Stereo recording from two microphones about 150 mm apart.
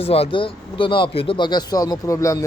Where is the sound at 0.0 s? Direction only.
40° left (ahead or behind).